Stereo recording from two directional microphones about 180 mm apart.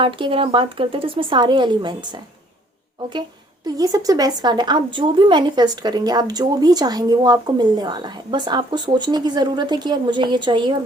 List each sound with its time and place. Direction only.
0.0 s speech: 30° right (ahead or behind)
3.8 s speech: 20° right (ahead or behind)